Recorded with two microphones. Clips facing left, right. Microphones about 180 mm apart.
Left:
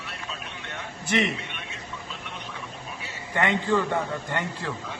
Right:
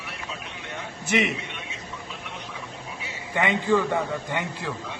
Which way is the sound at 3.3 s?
10° right (ahead or behind).